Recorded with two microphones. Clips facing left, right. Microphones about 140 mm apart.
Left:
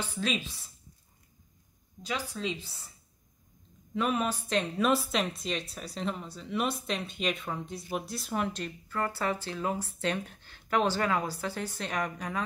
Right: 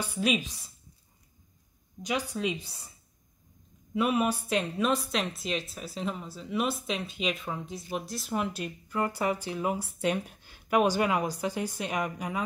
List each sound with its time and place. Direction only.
0.0 s speech: 10° right (ahead or behind)
2.0 s speech: 15° right (ahead or behind)
3.9 s speech: 10° right (ahead or behind)